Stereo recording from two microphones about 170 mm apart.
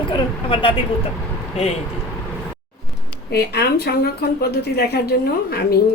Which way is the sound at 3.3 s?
70° left (ahead or behind).